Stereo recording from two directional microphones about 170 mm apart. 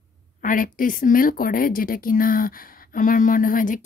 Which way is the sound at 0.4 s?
50° left (ahead or behind).